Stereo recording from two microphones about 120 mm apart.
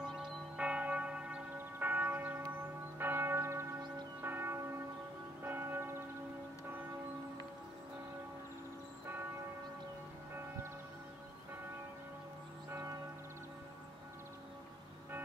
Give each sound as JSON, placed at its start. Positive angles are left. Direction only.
{"t": 0.0, "sound": "church bell", "side_deg": -10}
{"t": 9.0, "sound": "church bell", "side_deg": -20}